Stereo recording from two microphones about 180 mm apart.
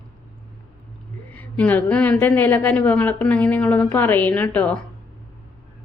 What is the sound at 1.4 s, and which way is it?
A woman's voice, 10° left (ahead or behind).